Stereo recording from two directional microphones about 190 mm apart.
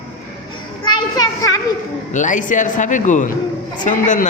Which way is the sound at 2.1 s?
40° left (ahead or behind).